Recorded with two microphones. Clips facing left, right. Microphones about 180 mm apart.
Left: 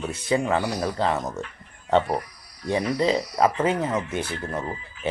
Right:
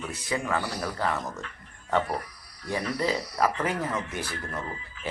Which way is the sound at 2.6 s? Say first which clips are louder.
Left 6 dB; 15° left (ahead or behind).